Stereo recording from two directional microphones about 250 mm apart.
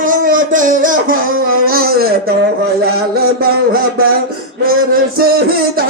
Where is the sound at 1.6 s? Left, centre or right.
Right.